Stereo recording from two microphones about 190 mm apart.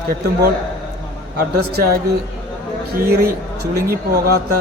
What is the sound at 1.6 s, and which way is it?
Speech, 60° right (ahead or behind).